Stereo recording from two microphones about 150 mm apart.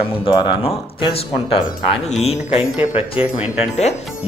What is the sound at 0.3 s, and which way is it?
Speech, 40° left (ahead or behind).